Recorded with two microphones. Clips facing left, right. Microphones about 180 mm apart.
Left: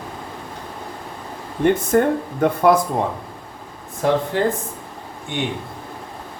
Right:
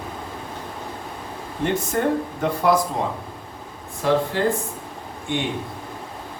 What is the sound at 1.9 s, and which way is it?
Speech, 55° left (ahead or behind).